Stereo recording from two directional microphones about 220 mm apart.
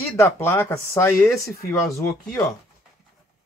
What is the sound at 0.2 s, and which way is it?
Speech, 10° left (ahead or behind).